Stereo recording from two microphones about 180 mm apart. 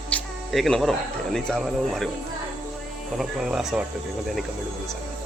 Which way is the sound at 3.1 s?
5° right (ahead or behind).